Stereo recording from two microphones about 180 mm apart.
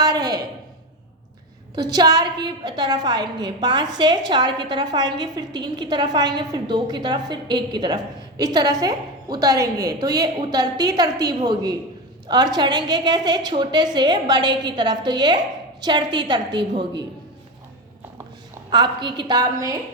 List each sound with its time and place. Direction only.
0.0 s a sound: 20° right (ahead or behind)
1.7 s a woman's voice: 20° right (ahead or behind)
18.7 s a woman's voice: 25° right (ahead or behind)